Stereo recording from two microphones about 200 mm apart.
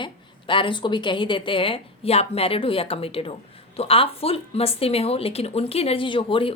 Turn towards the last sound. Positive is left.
turn(degrees=25)  # may be behind; listen again after turning